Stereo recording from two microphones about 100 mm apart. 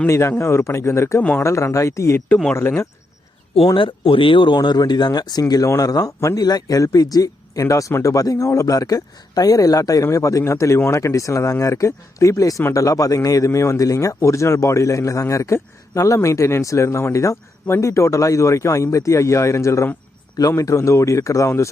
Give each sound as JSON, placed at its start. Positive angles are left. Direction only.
{"t": 0.1, "sound": "a man's voice", "side_deg": 25}
{"t": 3.8, "sound": "speech", "side_deg": 60}